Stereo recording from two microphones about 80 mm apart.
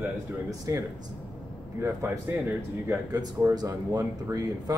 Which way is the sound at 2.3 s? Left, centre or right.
Right.